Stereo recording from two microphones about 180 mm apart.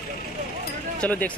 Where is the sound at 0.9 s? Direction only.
10° left (ahead or behind).